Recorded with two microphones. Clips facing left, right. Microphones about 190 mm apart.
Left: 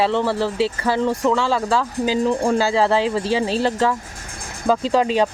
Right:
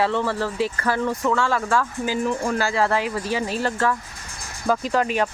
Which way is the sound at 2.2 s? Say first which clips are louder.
Left 5 dB; 35° left (ahead or behind).